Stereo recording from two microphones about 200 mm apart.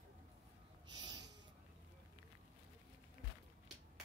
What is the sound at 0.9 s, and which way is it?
Snort, 20° right (ahead or behind).